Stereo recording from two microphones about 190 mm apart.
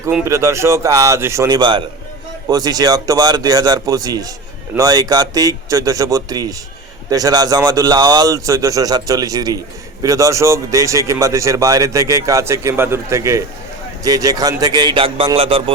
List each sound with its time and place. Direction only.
0.0 s a man's voice: 15° right (ahead or behind)